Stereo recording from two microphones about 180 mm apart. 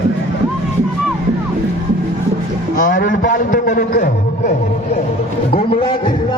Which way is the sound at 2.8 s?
50° left (ahead or behind).